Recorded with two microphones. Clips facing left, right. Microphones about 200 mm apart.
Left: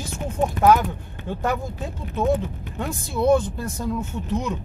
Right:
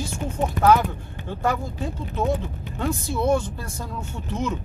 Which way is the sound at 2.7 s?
15° left (ahead or behind).